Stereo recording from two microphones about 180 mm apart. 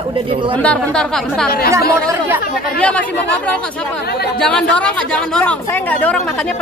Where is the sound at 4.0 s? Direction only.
60° left (ahead or behind).